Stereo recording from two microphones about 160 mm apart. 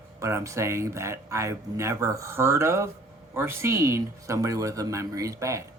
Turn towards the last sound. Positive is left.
turn(degrees=-20)  # may be behind; listen again after turning